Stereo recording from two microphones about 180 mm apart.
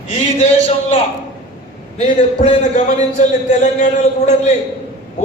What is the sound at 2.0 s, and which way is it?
A man's voice, 40° left (ahead or behind).